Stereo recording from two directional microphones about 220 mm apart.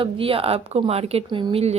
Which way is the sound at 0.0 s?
25° right (ahead or behind).